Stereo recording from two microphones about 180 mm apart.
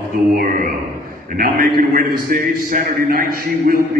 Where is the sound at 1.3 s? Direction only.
50° right (ahead or behind).